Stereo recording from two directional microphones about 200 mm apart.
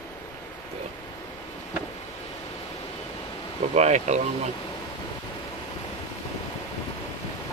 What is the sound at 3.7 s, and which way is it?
Speech, 35° right (ahead or behind).